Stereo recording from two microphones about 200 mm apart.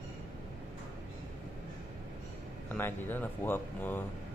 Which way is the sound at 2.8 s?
10° left (ahead or behind).